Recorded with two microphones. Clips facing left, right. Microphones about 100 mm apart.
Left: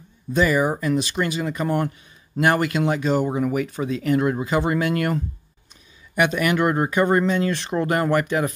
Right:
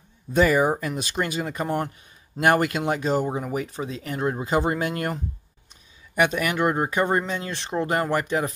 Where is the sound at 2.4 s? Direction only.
45° right (ahead or behind).